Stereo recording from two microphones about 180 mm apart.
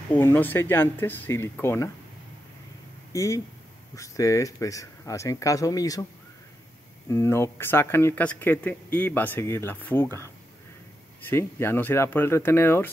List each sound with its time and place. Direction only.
0.1 s speech: 10° left (ahead or behind)
3.1 s speech: 15° left (ahead or behind)
7.1 s speech: 15° left (ahead or behind)